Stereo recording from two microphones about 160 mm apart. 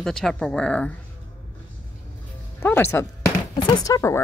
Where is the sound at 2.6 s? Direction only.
15° left (ahead or behind).